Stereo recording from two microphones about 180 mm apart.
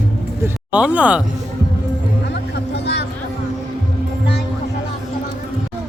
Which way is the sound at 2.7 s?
70° left (ahead or behind).